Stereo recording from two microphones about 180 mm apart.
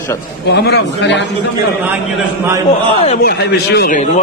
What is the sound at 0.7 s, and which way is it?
Speech, 70° left (ahead or behind).